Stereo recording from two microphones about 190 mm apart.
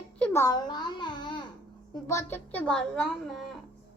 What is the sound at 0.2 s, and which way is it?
A child's voice, 15° left (ahead or behind).